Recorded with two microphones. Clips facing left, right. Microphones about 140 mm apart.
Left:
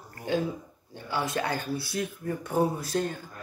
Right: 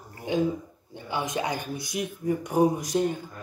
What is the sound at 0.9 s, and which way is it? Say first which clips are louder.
Speech: even; 15° right (ahead or behind).